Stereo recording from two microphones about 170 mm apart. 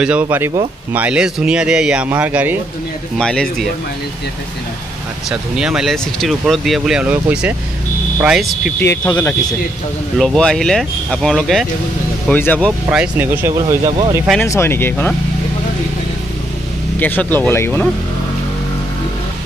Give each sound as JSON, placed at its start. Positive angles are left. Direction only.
{"t": 0.0, "sound": "speech", "side_deg": -10}
{"t": 3.2, "sound": "speech", "side_deg": 5}
{"t": 5.3, "sound": "speech", "side_deg": -5}
{"t": 8.7, "sound": "speech", "side_deg": 10}
{"t": 10.1, "sound": "speech", "side_deg": 5}
{"t": 12.9, "sound": "speech", "side_deg": -10}
{"t": 13.8, "sound": "speech", "side_deg": -30}
{"t": 14.4, "sound": "speech", "side_deg": 15}
{"t": 17.0, "sound": "speech", "side_deg": 10}